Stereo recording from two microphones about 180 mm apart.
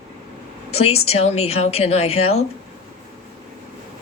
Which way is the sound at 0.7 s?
35° left (ahead or behind).